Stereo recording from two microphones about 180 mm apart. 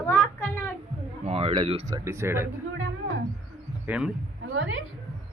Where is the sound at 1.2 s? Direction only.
35° right (ahead or behind).